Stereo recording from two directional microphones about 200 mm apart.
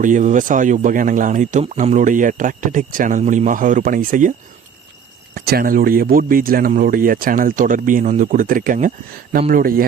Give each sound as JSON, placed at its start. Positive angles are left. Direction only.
{"t": 0.0, "sound": "speech", "side_deg": -40}
{"t": 5.3, "sound": "speech", "side_deg": -50}